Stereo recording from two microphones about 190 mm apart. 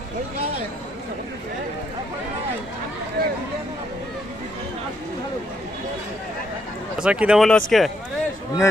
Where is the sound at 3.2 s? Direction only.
55° right (ahead or behind).